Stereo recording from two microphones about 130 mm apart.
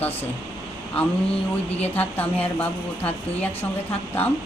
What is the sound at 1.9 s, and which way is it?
Speech, 15° left (ahead or behind).